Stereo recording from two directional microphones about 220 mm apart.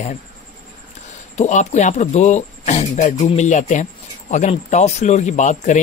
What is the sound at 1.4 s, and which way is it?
Speech, 30° left (ahead or behind).